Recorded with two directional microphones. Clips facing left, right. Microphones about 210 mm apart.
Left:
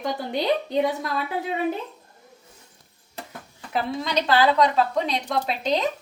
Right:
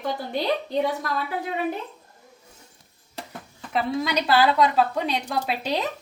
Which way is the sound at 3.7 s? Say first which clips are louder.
Right 1 dB; 5° right (ahead or behind).